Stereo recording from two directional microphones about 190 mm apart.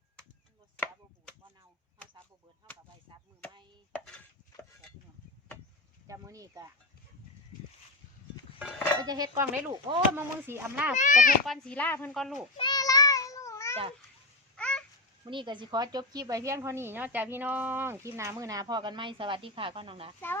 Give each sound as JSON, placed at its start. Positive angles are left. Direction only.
{"t": 4.0, "sound": "chopping", "side_deg": 5}
{"t": 6.1, "sound": "speech", "side_deg": -15}
{"t": 8.5, "sound": "speech", "side_deg": 0}
{"t": 9.0, "sound": "speech", "side_deg": -20}
{"t": 10.9, "sound": "a child's voice", "side_deg": 40}
{"t": 11.4, "sound": "speech", "side_deg": 0}
{"t": 12.5, "sound": "child singing", "side_deg": 20}
{"t": 14.5, "sound": "babbling", "side_deg": 5}
{"t": 15.2, "sound": "speech", "side_deg": -25}